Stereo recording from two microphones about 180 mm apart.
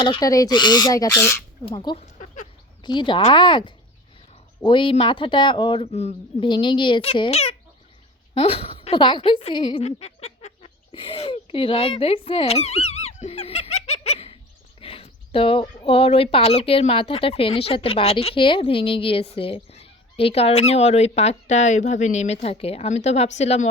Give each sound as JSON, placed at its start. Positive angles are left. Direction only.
{"t": 0.0, "sound": "speech", "side_deg": 25}
{"t": 1.7, "sound": "speech", "side_deg": 25}
{"t": 2.0, "sound": "a sound", "side_deg": 40}
{"t": 2.8, "sound": "a woman's voice", "side_deg": 25}